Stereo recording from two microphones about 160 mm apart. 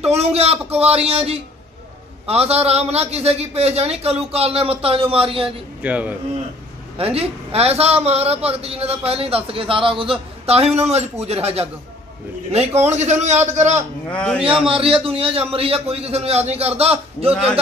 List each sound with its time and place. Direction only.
0.0 s a man's voice: 40° right (ahead or behind)
5.8 s speech: 10° right (ahead or behind)
7.0 s a man's voice: 35° right (ahead or behind)
14.0 s a man's voice: 5° left (ahead or behind)
14.7 s a man's voice: 35° right (ahead or behind)